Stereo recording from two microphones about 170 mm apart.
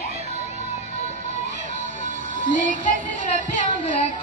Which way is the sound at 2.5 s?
50° right (ahead or behind).